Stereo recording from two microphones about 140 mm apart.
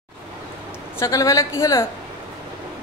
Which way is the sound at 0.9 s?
20° left (ahead or behind).